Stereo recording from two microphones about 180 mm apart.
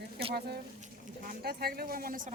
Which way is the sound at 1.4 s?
60° right (ahead or behind).